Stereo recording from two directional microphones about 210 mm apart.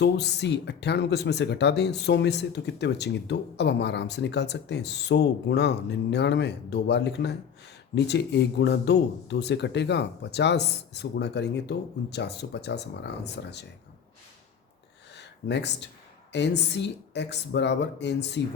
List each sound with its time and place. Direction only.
0.0 s speech: 55° left (ahead or behind)
15.1 s a sound: 55° left (ahead or behind)
16.3 s speech: 55° left (ahead or behind)